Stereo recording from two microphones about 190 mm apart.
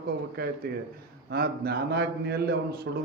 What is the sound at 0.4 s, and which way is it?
A man's voice, 55° right (ahead or behind).